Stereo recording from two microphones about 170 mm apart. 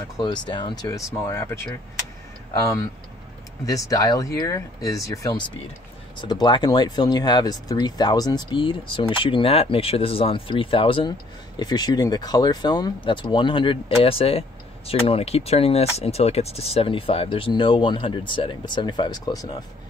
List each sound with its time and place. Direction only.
0.2 s speech: 25° left (ahead or behind)
6.4 s speech: 25° left (ahead or behind)